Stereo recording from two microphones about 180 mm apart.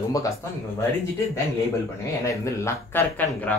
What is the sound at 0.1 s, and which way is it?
Speech, 20° left (ahead or behind).